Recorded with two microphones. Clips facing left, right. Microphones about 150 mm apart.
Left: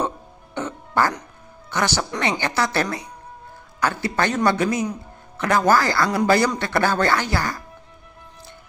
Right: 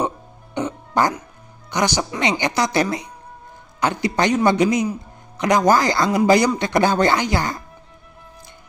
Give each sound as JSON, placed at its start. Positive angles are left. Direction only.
{"t": 0.6, "sound": "music", "side_deg": -15}
{"t": 2.1, "sound": "speech", "side_deg": -15}